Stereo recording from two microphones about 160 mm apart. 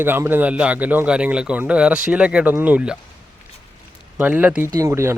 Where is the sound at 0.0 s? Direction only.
15° right (ahead or behind).